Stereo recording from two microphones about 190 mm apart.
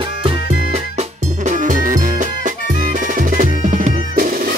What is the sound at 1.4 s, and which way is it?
Music, 40° right (ahead or behind).